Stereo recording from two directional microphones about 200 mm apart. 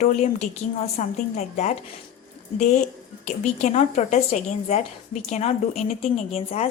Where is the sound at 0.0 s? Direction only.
35° left (ahead or behind).